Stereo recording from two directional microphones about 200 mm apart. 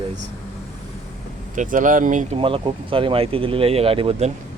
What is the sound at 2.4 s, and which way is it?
Speech, 25° right (ahead or behind).